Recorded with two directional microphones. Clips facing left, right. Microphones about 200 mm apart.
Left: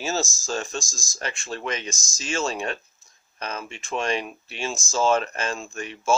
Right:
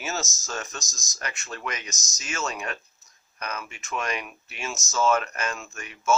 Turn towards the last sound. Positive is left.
turn(degrees=30)  # may be behind; listen again after turning